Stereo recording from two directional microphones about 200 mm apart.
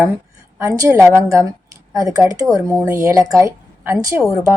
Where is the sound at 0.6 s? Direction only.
15° right (ahead or behind).